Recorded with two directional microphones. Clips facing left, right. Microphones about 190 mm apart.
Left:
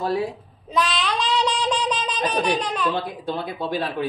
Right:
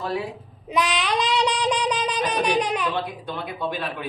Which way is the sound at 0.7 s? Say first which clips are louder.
Even; 15° right (ahead or behind).